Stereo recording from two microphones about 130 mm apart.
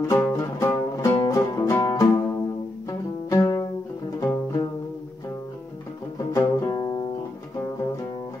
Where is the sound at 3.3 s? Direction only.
25° left (ahead or behind).